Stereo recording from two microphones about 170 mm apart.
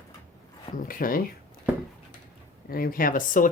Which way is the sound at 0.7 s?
55° left (ahead or behind).